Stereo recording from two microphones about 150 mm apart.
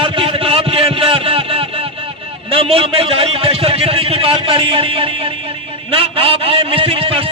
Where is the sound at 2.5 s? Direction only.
40° right (ahead or behind).